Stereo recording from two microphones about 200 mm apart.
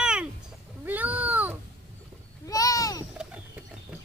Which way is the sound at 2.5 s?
15° left (ahead or behind).